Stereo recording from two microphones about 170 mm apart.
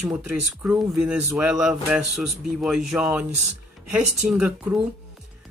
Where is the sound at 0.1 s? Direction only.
10° right (ahead or behind).